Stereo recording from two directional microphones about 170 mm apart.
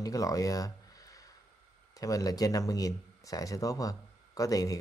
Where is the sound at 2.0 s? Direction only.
20° left (ahead or behind).